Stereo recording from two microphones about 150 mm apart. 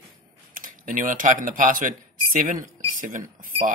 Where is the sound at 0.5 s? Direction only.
65° right (ahead or behind).